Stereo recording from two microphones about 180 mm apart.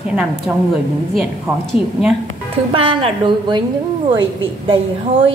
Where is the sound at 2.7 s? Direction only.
30° right (ahead or behind).